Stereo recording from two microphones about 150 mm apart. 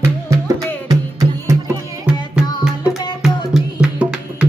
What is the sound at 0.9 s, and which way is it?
Music, 20° right (ahead or behind).